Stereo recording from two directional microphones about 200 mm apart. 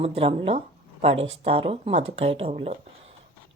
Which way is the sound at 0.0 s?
30° right (ahead or behind).